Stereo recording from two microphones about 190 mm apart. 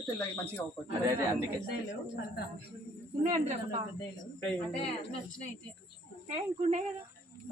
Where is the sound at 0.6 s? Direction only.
10° left (ahead or behind).